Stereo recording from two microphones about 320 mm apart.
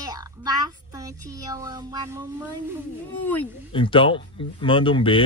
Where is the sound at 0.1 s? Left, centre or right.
Centre.